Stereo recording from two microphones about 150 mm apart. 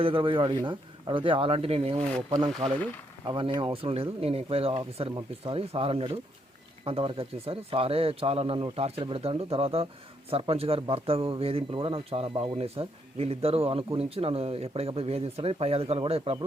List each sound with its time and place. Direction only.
0.0 s speech: 35° right (ahead or behind)
3.2 s speech: 35° right (ahead or behind)